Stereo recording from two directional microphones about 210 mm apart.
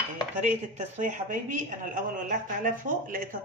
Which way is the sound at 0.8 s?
35° right (ahead or behind).